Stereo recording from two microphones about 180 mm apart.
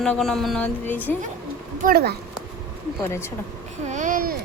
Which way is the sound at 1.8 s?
55° right (ahead or behind).